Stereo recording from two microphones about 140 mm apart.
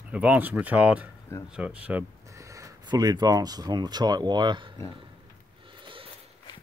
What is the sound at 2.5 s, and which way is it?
Speech, 25° right (ahead or behind).